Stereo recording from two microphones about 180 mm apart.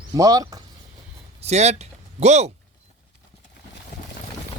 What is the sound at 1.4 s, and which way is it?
Speech, 35° right (ahead or behind).